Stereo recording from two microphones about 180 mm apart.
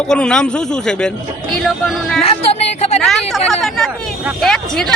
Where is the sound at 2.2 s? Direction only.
35° left (ahead or behind).